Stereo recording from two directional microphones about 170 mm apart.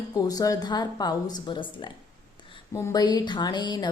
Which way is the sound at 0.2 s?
20° left (ahead or behind).